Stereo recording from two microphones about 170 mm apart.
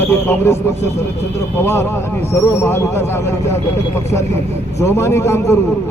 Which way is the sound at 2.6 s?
15° left (ahead or behind).